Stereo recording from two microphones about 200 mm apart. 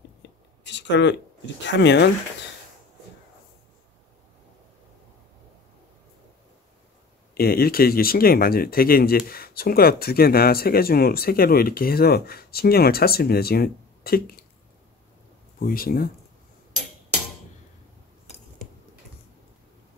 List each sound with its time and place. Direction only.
0.7 s a sound: 60° left (ahead or behind)
1.6 s speech: 60° left (ahead or behind)
7.3 s speech: 50° left (ahead or behind)
15.6 s speech: 45° left (ahead or behind)